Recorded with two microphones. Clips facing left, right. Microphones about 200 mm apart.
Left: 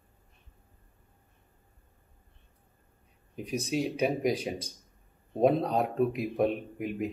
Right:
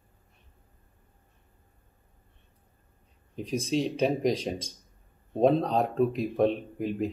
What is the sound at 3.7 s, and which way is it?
Speech, 5° left (ahead or behind).